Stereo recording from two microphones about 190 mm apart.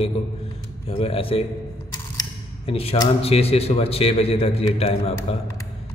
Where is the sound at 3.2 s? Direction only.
30° left (ahead or behind).